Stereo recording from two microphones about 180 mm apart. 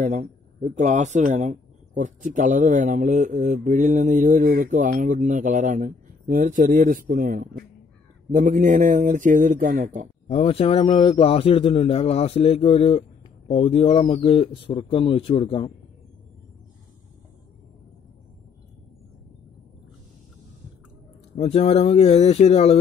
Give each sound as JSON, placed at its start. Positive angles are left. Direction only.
{"t": 0.0, "sound": "speech", "side_deg": -45}
{"t": 10.2, "sound": "a man's voice", "side_deg": 35}
{"t": 21.4, "sound": "a man's voice", "side_deg": 35}